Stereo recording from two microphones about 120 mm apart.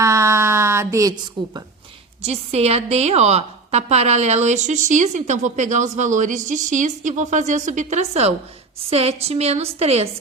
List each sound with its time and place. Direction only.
0.0 s a sound: 25° right (ahead or behind)
2.2 s a woman's voice: 60° right (ahead or behind)
8.9 s a woman's voice: 60° right (ahead or behind)